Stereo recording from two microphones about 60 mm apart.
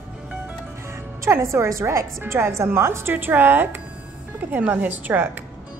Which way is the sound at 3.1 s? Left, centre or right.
Right.